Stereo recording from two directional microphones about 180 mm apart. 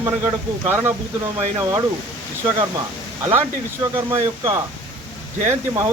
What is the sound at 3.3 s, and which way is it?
Speech, 15° right (ahead or behind).